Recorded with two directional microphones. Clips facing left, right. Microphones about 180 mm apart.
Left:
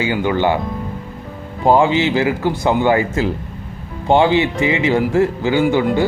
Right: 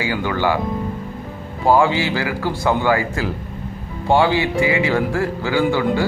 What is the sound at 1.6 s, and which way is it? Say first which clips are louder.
Speech: left 2 dB; 20° left (ahead or behind).